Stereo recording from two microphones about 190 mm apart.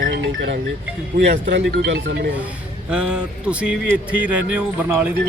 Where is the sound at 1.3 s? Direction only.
65° right (ahead or behind).